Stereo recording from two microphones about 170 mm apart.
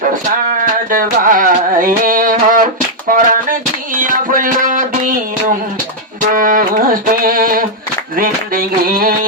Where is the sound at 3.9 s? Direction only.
55° right (ahead or behind).